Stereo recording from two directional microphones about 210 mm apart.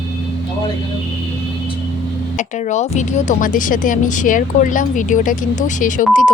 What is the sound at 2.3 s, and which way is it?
A woman's voice, 35° left (ahead or behind).